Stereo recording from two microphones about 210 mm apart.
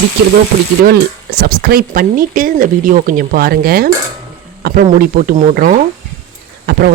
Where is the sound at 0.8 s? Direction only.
45° right (ahead or behind).